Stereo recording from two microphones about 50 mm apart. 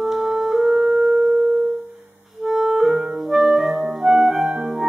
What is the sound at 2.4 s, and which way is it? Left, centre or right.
Clarinet, centre.